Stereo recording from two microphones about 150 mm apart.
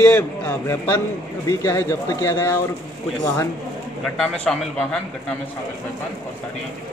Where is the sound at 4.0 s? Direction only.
Centre (ahead or behind).